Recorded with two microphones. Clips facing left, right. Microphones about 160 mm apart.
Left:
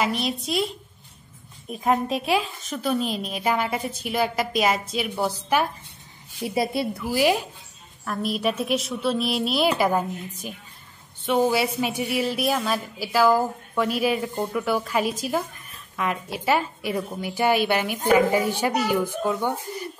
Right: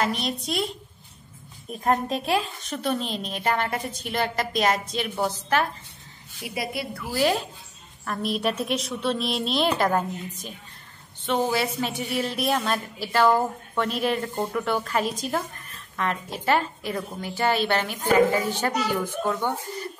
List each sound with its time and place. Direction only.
0.0 s a woman's voice: centre (ahead or behind)
6.4 s a woman's voice: 30° left (ahead or behind)
7.2 s a woman's voice: 10° left (ahead or behind)
8.0 s a woman's voice: centre (ahead or behind)